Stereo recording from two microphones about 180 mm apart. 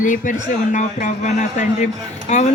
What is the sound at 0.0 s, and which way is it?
A man's voice, 45° left (ahead or behind).